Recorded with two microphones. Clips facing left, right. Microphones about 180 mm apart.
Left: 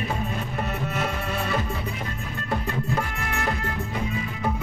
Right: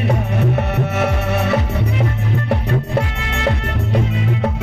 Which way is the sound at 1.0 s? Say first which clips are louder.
Right 10 dB; 75° right (ahead or behind).